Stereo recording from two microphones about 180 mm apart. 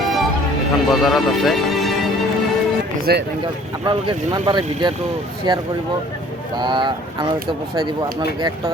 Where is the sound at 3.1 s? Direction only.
60° right (ahead or behind).